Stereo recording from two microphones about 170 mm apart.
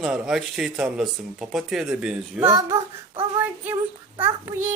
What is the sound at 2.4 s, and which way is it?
Speech, 20° right (ahead or behind).